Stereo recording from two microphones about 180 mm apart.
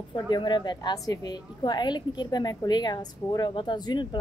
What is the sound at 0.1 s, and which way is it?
A woman's voice, 25° left (ahead or behind).